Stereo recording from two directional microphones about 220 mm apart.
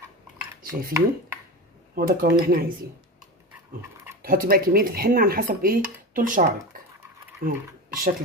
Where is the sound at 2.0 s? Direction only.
45° right (ahead or behind).